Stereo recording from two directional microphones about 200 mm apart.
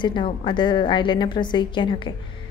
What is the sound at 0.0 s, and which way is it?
A woman's voice, 25° left (ahead or behind).